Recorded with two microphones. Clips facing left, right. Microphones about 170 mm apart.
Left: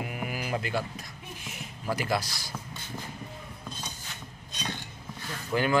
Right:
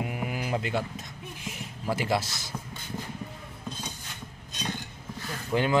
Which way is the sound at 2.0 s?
25° right (ahead or behind).